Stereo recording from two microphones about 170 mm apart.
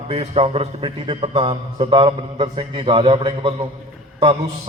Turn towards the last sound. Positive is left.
turn(degrees=-30)  # may be behind; listen again after turning